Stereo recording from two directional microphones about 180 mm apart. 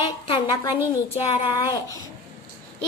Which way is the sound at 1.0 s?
30° left (ahead or behind).